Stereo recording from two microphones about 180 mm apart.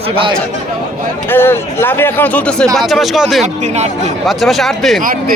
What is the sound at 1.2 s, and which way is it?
Speech, 10° left (ahead or behind).